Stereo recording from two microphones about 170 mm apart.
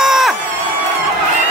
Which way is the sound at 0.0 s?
Centre (ahead or behind).